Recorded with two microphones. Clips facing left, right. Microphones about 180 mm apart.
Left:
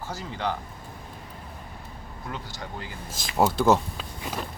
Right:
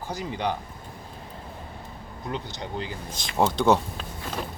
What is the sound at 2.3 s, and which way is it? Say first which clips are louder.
Speech: right 5 dB; 20° right (ahead or behind).